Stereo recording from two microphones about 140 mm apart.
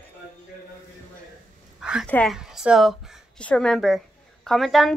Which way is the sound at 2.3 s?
5° right (ahead or behind).